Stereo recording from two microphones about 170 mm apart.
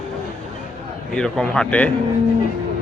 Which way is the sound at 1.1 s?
5° left (ahead or behind).